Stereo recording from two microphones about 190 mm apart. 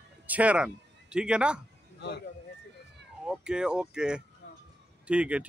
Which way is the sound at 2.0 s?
60° left (ahead or behind).